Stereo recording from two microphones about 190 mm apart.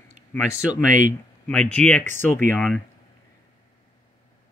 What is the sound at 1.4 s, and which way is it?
Speech, 5° left (ahead or behind).